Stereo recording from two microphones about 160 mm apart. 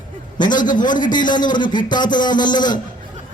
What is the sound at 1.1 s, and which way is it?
A man's voice, 25° left (ahead or behind).